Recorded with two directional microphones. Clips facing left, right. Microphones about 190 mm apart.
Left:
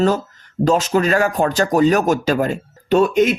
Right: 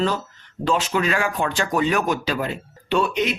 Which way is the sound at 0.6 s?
40° left (ahead or behind).